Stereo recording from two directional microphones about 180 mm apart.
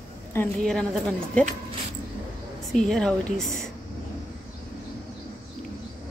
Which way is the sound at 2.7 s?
5° left (ahead or behind).